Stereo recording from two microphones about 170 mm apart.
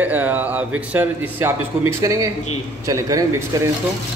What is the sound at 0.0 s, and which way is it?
A man's voice, 10° right (ahead or behind).